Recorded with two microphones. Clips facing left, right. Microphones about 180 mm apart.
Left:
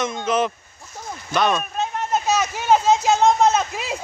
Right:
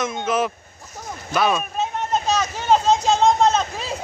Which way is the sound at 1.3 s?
5° right (ahead or behind).